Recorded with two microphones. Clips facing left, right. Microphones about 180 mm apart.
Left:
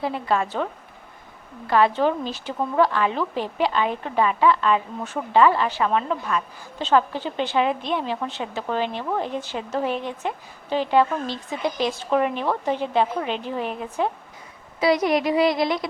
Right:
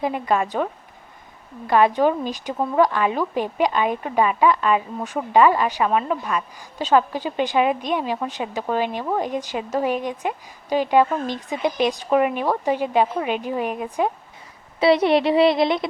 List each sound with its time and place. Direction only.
0.0 s a woman's voice: 15° right (ahead or behind)
14.8 s a woman's voice: 30° right (ahead or behind)